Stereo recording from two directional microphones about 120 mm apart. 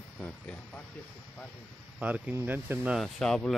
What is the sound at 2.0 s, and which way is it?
Speech, 15° right (ahead or behind).